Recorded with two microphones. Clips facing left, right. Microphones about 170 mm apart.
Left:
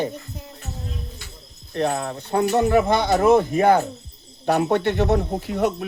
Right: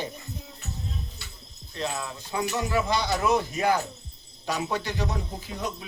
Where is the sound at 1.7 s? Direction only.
60° left (ahead or behind).